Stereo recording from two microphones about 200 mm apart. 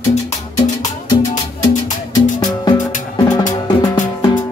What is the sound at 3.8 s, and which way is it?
Music, 20° left (ahead or behind).